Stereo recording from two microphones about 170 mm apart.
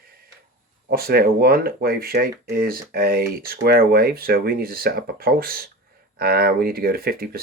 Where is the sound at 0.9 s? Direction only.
60° right (ahead or behind).